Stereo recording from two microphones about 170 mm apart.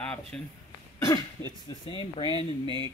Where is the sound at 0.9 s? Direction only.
20° left (ahead or behind).